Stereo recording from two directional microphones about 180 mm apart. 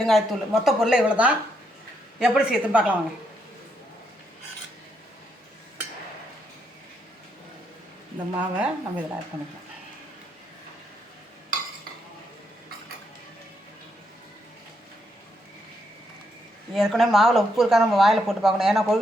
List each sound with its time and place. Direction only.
0.0 s speech: centre (ahead or behind)
8.4 s speech: 5° right (ahead or behind)
16.7 s speech: centre (ahead or behind)